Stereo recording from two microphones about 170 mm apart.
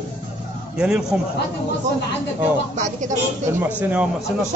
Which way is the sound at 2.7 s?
45° right (ahead or behind).